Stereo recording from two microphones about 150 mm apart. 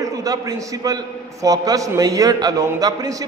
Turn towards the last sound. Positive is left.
turn(degrees=-25)  # may be behind; listen again after turning